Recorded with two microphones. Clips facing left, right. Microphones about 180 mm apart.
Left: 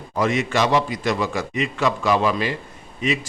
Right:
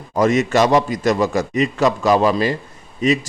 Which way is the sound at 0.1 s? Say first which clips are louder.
Right 6 dB; 45° right (ahead or behind).